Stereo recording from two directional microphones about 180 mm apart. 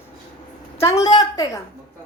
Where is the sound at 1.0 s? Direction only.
25° left (ahead or behind).